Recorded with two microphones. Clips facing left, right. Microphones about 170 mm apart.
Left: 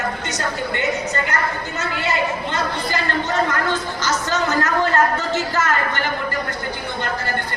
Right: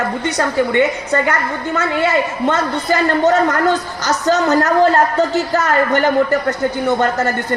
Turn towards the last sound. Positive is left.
turn(degrees=-35)  # may be behind; listen again after turning